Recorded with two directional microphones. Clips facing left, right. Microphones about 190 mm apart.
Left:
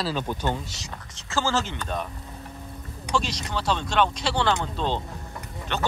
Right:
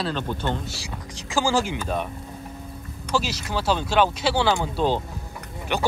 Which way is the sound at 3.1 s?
5° right (ahead or behind).